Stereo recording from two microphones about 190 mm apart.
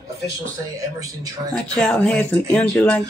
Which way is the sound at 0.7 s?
20° right (ahead or behind).